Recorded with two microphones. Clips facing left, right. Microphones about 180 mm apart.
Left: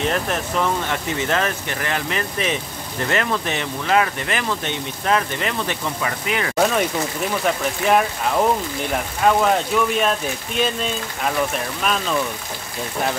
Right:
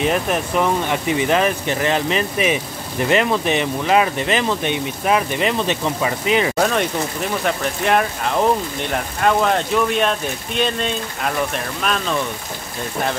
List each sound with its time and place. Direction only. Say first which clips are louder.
0.0 s speech: right 3 dB; 15° right (ahead or behind)
6.6 s speech: even; 5° left (ahead or behind)
9.2 s speech: even; 5° left (ahead or behind)